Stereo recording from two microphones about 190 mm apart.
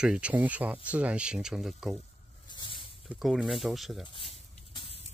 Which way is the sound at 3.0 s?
Centre (ahead or behind).